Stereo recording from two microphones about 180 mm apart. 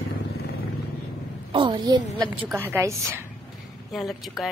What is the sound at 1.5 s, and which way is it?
A woman's voice, 25° right (ahead or behind).